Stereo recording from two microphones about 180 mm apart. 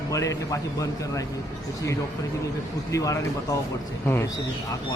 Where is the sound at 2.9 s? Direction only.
20° left (ahead or behind).